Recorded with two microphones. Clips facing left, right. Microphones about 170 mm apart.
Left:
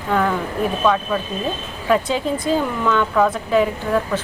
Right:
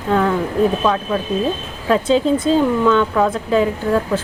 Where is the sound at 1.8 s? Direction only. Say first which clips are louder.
Right 4 dB; 30° right (ahead or behind).